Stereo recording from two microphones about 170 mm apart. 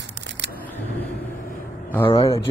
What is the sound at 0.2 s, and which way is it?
Single-lens reflex camera, 90° right.